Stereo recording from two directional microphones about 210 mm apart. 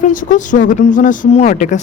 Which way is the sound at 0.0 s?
35° left (ahead or behind).